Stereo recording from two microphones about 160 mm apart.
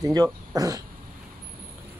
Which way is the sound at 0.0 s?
25° right (ahead or behind).